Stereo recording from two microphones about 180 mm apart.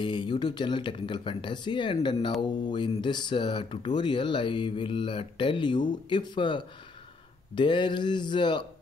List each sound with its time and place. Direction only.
0.0 s speech: 25° left (ahead or behind)